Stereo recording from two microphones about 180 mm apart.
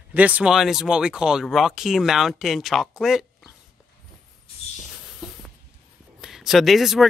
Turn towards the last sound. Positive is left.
turn(degrees=0)  # may be behind; listen again after turning